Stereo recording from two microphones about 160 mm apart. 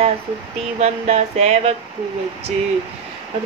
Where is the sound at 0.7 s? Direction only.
45° right (ahead or behind).